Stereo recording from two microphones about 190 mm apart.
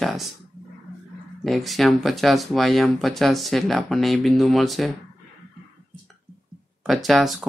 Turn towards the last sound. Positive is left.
turn(degrees=0)  # may be behind; listen again after turning